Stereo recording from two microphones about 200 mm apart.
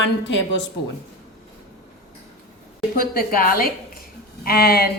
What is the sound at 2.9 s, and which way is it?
A woman's voice, 45° left (ahead or behind).